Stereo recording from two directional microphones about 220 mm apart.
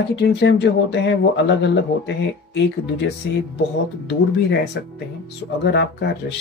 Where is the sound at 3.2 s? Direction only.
50° left (ahead or behind).